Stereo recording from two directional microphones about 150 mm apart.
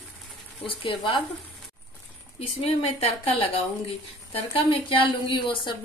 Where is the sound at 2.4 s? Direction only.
40° left (ahead or behind).